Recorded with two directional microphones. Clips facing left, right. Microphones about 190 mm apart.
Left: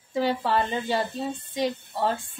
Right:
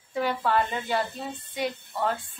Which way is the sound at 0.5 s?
30° left (ahead or behind).